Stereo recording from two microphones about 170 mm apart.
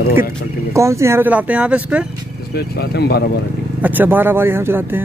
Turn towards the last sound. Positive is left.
turn(degrees=-15)  # may be behind; listen again after turning